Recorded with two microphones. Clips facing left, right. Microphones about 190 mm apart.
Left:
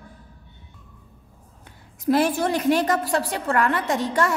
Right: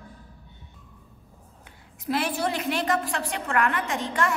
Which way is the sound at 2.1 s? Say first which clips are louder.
Left 6 dB; 45° left (ahead or behind).